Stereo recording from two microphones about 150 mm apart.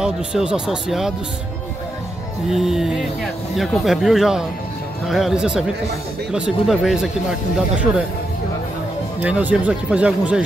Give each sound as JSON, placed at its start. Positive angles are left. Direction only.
{"t": 0.0, "sound": "speech", "side_deg": -5}
{"t": 2.5, "sound": "speech", "side_deg": 0}
{"t": 9.2, "sound": "speech", "side_deg": -10}